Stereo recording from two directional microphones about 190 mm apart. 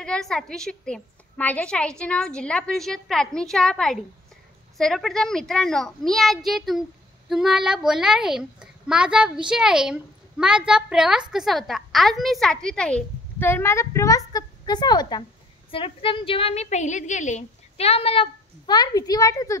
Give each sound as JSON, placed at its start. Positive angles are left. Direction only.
{"t": 0.0, "sound": "a woman's voice", "side_deg": 5}